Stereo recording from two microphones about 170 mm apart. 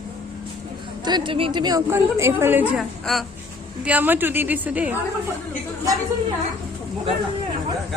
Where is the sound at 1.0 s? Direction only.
25° right (ahead or behind); by 2.8 s 10° right (ahead or behind).